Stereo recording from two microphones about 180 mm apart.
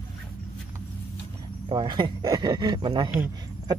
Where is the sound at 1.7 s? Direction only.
25° right (ahead or behind).